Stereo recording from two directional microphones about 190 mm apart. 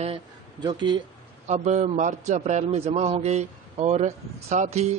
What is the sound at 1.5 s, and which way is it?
A man's voice, 35° right (ahead or behind).